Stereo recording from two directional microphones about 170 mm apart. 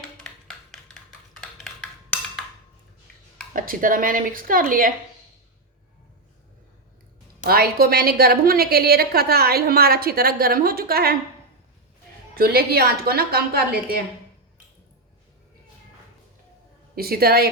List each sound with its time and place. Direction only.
1.4 s a sound: 5° left (ahead or behind)
3.5 s a woman's voice: 55° right (ahead or behind)
7.4 s a woman's voice: 60° right (ahead or behind)
12.4 s a woman's voice: 65° right (ahead or behind)
16.9 s a woman's voice: 60° right (ahead or behind)